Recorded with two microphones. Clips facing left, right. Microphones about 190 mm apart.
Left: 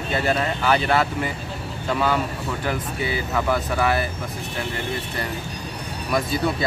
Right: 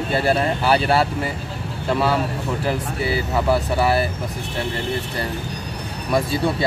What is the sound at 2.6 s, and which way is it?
Speech, 35° right (ahead or behind).